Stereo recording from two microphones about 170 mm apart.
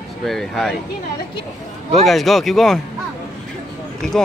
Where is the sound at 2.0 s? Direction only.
Centre (ahead or behind).